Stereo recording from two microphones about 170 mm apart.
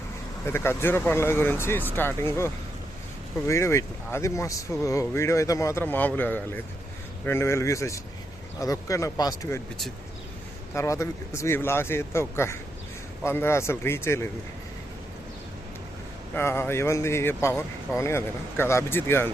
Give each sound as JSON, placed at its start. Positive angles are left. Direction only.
{"t": 0.4, "sound": "speech", "side_deg": 15}
{"t": 10.8, "sound": "speech", "side_deg": 15}
{"t": 16.3, "sound": "speech", "side_deg": 15}